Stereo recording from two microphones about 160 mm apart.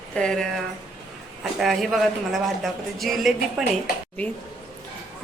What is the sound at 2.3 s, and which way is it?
A woman's voice, centre (ahead or behind).